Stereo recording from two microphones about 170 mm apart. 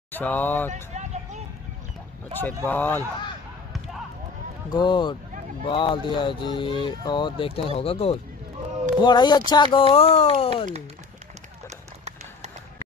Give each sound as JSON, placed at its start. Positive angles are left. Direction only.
{"t": 0.1, "sound": "speech", "side_deg": 10}
{"t": 0.9, "sound": "vehicle", "side_deg": -45}
{"t": 2.3, "sound": "speech", "side_deg": 10}
{"t": 4.7, "sound": "speech", "side_deg": 25}
{"t": 9.0, "sound": "speech", "side_deg": 25}